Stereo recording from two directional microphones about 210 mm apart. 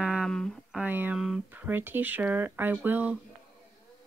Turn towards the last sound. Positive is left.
turn(degrees=-10)  # may be behind; listen again after turning